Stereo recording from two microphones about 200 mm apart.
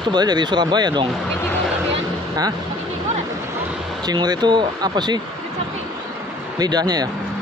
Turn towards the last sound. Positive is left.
turn(degrees=-20)  # may be behind; listen again after turning